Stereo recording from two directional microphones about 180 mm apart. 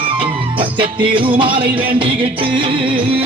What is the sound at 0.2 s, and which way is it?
Music, 30° right (ahead or behind).